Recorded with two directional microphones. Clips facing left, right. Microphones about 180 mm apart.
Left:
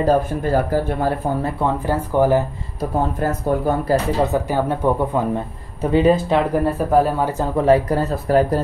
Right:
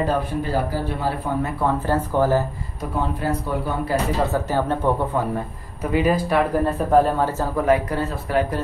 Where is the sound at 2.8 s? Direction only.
45° left (ahead or behind).